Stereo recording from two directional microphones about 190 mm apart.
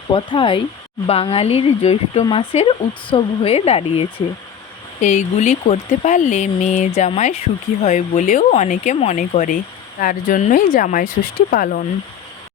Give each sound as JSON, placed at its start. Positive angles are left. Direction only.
{"t": 0.1, "sound": "speech", "side_deg": 25}